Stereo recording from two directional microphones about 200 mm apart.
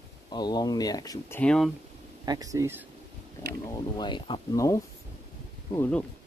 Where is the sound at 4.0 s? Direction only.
25° left (ahead or behind).